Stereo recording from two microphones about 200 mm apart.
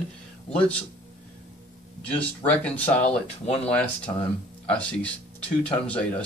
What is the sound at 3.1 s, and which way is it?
Speech, 30° left (ahead or behind).